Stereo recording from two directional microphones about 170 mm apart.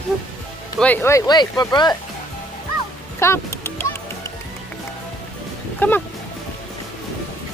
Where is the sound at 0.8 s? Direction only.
10° left (ahead or behind).